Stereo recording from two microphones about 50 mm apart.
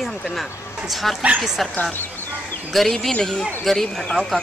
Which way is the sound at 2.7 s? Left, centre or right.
Centre.